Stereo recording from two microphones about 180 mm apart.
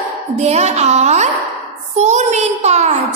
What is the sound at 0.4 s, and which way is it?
Speech, 40° right (ahead or behind).